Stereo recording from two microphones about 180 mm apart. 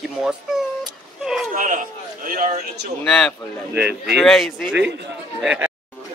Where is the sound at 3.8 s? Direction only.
65° right (ahead or behind).